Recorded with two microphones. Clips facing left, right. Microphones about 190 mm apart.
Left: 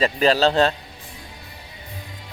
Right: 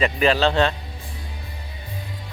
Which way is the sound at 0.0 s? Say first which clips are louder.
Left 1 dB; 40° left (ahead or behind).